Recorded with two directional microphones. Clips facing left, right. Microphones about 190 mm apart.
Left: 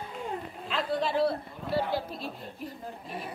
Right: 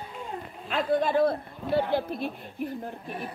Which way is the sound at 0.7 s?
50° right (ahead or behind).